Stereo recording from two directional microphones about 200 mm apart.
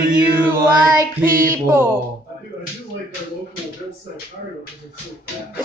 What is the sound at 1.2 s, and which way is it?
Speech, 45° right (ahead or behind).